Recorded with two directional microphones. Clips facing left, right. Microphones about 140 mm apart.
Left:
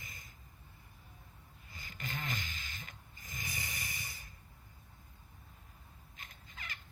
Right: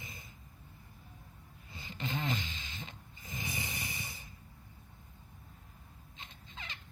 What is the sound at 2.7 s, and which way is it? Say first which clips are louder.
Snort: right 4 dB; 30° right (ahead or behind).